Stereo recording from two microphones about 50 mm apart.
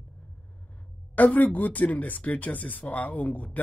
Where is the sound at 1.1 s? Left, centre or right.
Left.